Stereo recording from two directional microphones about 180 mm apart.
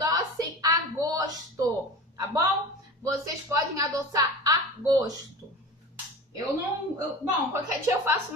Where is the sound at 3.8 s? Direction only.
20° right (ahead or behind).